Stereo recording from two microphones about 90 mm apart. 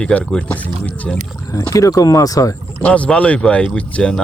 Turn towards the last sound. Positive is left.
turn(degrees=10)  # may be behind; listen again after turning